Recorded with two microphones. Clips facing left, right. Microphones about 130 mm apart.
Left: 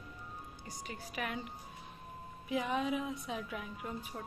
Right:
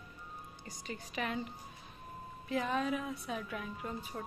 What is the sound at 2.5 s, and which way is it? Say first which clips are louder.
A woman's voice: even; 15° left (ahead or behind).